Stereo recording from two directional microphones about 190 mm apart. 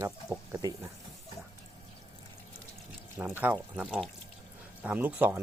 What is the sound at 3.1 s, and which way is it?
Speech, 10° right (ahead or behind).